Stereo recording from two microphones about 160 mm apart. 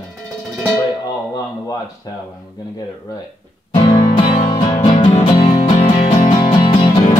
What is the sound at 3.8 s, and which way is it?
Music, 30° left (ahead or behind).